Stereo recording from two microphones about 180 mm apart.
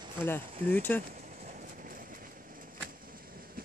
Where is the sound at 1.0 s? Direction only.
45° right (ahead or behind).